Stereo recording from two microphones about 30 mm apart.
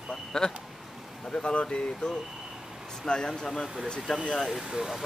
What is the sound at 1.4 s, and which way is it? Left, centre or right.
Speech, left.